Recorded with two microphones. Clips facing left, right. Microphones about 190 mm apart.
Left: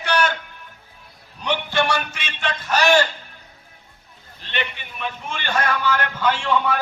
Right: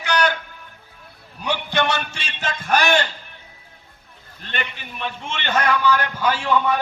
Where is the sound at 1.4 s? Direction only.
15° right (ahead or behind).